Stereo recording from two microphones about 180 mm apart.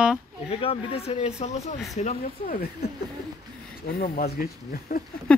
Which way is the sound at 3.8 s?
55° left (ahead or behind).